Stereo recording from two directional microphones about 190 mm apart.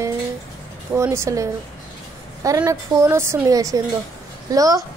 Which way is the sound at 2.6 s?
15° right (ahead or behind).